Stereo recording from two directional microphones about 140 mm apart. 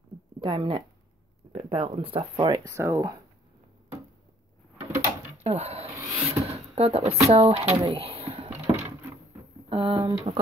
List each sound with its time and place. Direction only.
0.4 s speech: 35° right (ahead or behind)
2.7 s speech: 20° right (ahead or behind)
4.9 s drawer open or close: 50° right (ahead or behind)
6.1 s speech: 45° right (ahead or behind)
7.7 s speech: 25° right (ahead or behind)
8.0 s a sound: 45° right (ahead or behind)
9.7 s speech: 35° right (ahead or behind)